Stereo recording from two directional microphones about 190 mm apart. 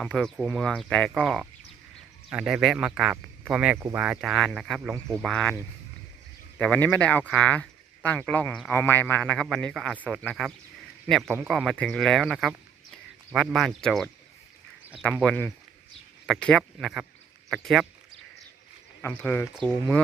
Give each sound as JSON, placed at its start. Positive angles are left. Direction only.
{"t": 0.0, "sound": "speech", "side_deg": 5}
{"t": 6.6, "sound": "a man's voice", "side_deg": 5}
{"t": 15.2, "sound": "a man's voice", "side_deg": 5}
{"t": 19.0, "sound": "a man's voice", "side_deg": 10}